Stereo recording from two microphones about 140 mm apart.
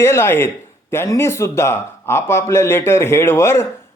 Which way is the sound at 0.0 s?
20° left (ahead or behind).